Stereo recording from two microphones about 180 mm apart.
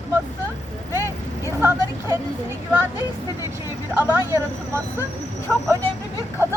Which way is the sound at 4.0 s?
10° right (ahead or behind).